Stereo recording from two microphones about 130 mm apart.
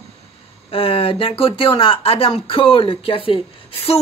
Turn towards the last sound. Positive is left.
turn(degrees=45)  # may be behind; listen again after turning